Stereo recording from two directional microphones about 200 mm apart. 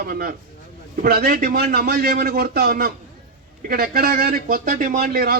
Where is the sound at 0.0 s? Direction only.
50° right (ahead or behind).